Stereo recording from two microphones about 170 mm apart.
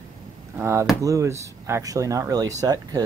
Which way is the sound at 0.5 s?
15° right (ahead or behind).